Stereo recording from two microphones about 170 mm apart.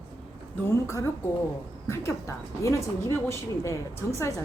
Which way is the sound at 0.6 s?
15° left (ahead or behind).